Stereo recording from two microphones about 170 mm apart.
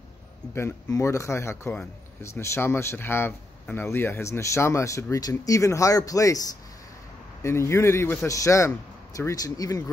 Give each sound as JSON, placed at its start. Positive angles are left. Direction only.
{"t": 0.6, "sound": "speech", "side_deg": 15}
{"t": 7.4, "sound": "speech", "side_deg": 15}